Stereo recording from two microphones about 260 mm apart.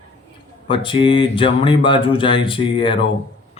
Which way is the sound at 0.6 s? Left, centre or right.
Centre.